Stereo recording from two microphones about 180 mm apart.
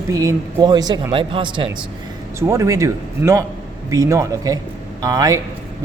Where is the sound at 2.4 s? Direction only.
15° right (ahead or behind).